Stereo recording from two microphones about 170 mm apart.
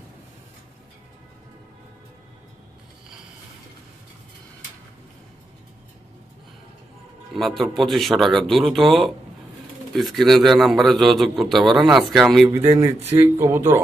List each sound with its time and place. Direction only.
7.3 s a man's voice: centre (ahead or behind)
12.4 s speech: 15° right (ahead or behind)